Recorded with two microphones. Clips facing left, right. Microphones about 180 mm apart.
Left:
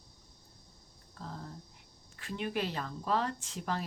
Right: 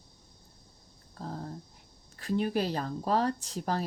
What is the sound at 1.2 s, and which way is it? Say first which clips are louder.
Speech: right 6 dB; 40° right (ahead or behind).